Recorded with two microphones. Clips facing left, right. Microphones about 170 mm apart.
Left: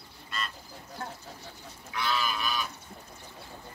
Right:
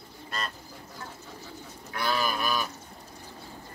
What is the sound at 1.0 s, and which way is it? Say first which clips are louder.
Bird: left 5 dB; 55° left (ahead or behind).